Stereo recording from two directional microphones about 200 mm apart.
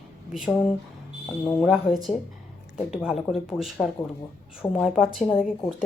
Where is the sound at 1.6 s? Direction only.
Centre (ahead or behind).